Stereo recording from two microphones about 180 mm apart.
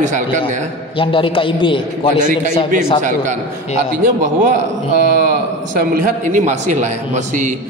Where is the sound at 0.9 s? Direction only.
30° left (ahead or behind).